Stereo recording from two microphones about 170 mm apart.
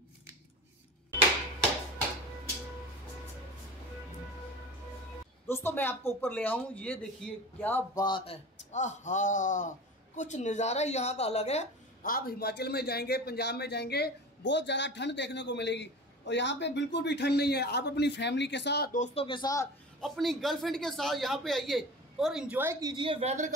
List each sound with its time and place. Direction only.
5.5 s speech: 10° left (ahead or behind)
8.0 s speech: 25° left (ahead or behind)
8.7 s a woman's voice: 45° left (ahead or behind)
12.0 s a man's voice: 60° left (ahead or behind); by 18.9 s 85° left
18.9 s speech: 35° left (ahead or behind)
20.0 s a man's voice: centre (ahead or behind); by 23.5 s 40° right (ahead or behind)